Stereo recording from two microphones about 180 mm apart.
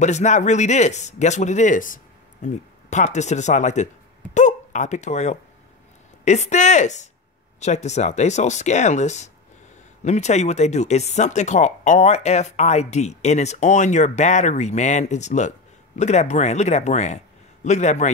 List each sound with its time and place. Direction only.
0.0 s speech: 40° left (ahead or behind)